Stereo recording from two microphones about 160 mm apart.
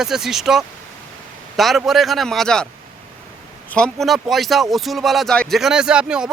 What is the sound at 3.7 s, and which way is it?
Speech, 5° left (ahead or behind).